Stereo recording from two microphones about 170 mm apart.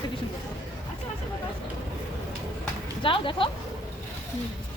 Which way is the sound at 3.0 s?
30° left (ahead or behind).